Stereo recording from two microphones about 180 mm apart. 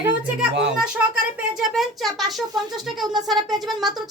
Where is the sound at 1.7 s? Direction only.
Centre (ahead or behind).